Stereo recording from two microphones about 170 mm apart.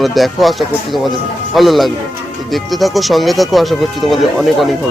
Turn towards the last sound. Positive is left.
turn(degrees=0)  # may be behind; listen again after turning